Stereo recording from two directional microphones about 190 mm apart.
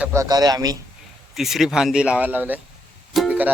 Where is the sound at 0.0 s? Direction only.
15° right (ahead or behind).